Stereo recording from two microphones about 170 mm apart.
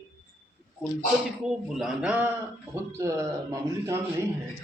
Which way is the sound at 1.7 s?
5° right (ahead or behind).